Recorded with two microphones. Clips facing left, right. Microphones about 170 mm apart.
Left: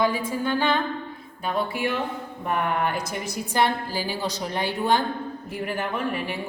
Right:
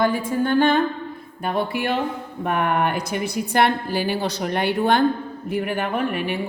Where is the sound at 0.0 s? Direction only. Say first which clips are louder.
Right 3 dB; 55° right (ahead or behind).